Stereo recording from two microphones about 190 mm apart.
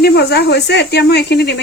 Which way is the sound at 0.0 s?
55° left (ahead or behind).